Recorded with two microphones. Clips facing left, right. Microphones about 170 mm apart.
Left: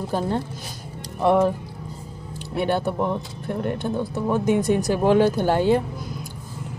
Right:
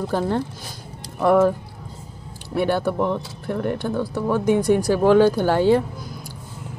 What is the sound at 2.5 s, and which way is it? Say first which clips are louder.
Speech: right 2 dB; 20° left (ahead or behind).